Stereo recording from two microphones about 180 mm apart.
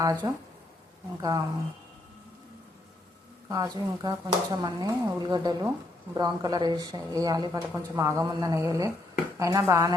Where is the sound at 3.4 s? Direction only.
20° right (ahead or behind).